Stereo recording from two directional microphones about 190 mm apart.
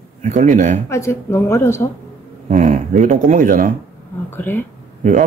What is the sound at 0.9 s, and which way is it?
A woman's voice, 15° left (ahead or behind).